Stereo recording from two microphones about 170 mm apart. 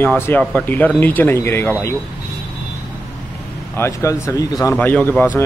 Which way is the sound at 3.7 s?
15° left (ahead or behind).